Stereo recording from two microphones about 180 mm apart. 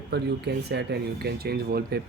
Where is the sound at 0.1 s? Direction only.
65° right (ahead or behind).